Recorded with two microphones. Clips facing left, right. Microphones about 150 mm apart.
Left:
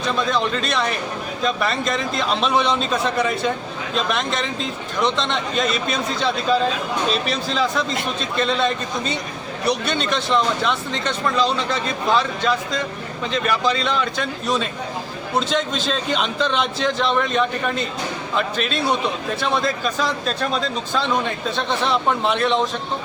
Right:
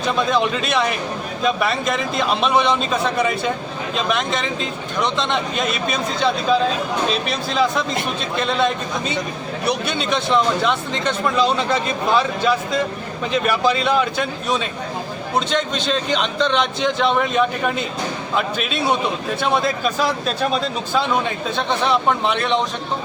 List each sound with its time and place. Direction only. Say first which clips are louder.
0.0 s speech: right 2 dB; 5° right (ahead or behind)